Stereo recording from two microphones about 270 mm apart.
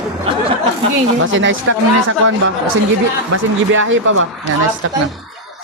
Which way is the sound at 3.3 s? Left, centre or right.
Right.